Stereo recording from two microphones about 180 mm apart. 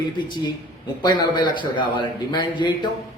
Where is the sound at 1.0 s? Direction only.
25° left (ahead or behind).